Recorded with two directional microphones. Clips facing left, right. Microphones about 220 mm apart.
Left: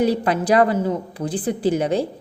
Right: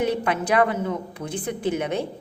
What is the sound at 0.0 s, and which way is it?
A woman's voice, 35° left (ahead or behind).